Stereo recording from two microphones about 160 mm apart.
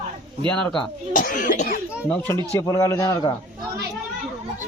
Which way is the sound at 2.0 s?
10° left (ahead or behind).